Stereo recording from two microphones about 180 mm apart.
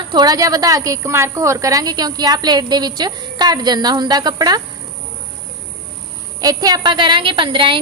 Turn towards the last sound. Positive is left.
turn(degrees=-30)  # may be behind; listen again after turning